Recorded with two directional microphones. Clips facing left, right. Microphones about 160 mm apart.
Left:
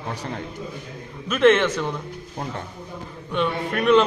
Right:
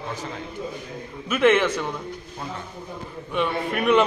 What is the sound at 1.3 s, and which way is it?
Speech, 10° right (ahead or behind).